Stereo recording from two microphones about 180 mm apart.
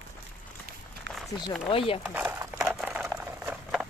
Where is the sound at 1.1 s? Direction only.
75° right (ahead or behind).